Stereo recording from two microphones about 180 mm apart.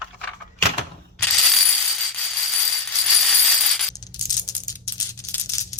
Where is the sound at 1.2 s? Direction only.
5° left (ahead or behind).